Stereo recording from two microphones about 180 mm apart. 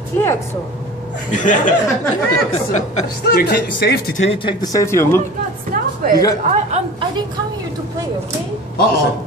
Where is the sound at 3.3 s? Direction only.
65° left (ahead or behind).